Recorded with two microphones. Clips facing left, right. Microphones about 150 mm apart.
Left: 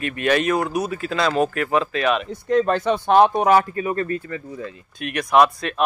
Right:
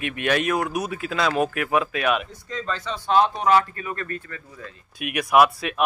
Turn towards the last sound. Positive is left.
turn(degrees=-5)  # may be behind; listen again after turning